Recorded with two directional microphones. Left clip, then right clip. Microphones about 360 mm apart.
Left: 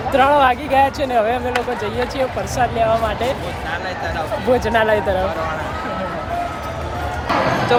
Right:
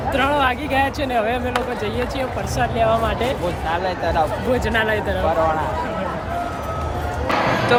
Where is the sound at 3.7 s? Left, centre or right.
Right.